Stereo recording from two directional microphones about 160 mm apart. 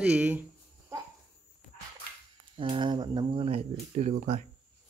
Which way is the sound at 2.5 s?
30° right (ahead or behind).